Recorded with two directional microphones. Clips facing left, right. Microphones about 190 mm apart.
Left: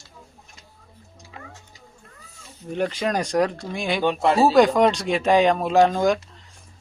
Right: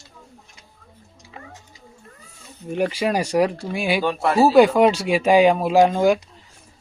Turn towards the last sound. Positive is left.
turn(degrees=-10)  # may be behind; listen again after turning